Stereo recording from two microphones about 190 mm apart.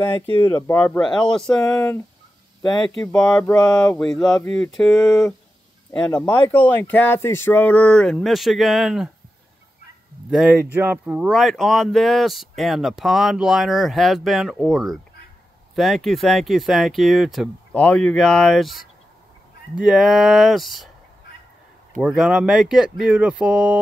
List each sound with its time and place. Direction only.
0.4 s speech: 15° left (ahead or behind)
1.6 s speech: 20° left (ahead or behind)
3.2 s speech: 5° left (ahead or behind)
4.4 s speech: 15° left (ahead or behind)
4.6 s speech: 5° left (ahead or behind)
10.3 s speech: 5° right (ahead or behind)
22.0 s speech: 5° right (ahead or behind)